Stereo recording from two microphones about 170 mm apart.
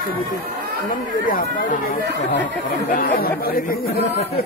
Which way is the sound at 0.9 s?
55° left (ahead or behind).